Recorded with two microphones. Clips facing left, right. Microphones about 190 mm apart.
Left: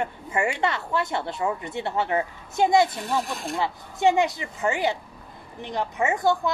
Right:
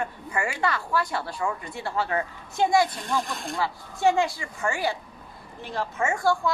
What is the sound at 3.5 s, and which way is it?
Speech, 20° left (ahead or behind).